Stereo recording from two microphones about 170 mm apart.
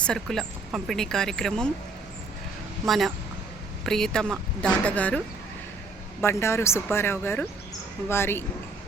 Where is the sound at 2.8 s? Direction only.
Centre (ahead or behind).